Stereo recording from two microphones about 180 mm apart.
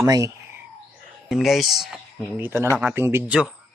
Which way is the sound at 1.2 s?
Centre (ahead or behind).